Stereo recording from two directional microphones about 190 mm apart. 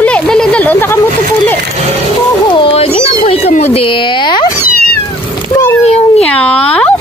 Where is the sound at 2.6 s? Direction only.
30° left (ahead or behind).